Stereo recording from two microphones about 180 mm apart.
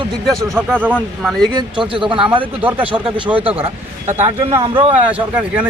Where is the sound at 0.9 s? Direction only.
5° left (ahead or behind).